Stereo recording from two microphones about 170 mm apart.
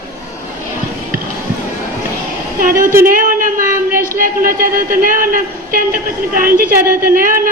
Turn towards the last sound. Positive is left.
turn(degrees=-55)  # may be behind; listen again after turning